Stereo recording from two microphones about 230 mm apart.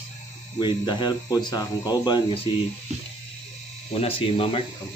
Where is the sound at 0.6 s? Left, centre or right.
Centre.